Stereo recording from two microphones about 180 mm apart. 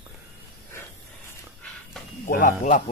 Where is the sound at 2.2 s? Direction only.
50° left (ahead or behind).